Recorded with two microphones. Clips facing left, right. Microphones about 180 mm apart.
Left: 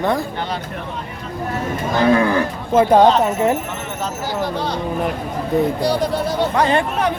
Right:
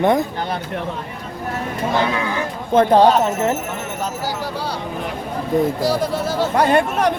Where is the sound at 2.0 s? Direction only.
50° left (ahead or behind).